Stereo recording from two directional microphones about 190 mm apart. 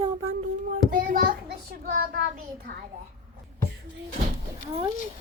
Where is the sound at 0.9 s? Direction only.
50° right (ahead or behind).